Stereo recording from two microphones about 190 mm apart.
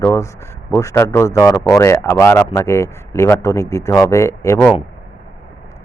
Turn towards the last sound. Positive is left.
turn(degrees=10)  # may be behind; listen again after turning